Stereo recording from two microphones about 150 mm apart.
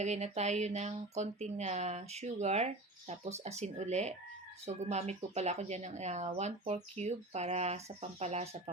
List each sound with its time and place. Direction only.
0.0 s speech: 50° right (ahead or behind)